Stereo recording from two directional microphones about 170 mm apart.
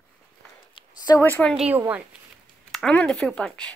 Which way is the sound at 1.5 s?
5° right (ahead or behind).